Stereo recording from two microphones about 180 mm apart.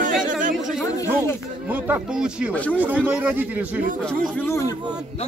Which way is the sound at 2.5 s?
10° left (ahead or behind).